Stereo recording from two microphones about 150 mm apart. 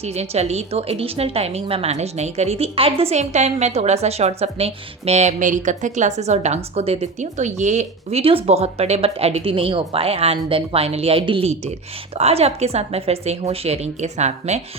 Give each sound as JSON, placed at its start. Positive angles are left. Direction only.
{"t": 0.0, "sound": "a woman's voice", "side_deg": -45}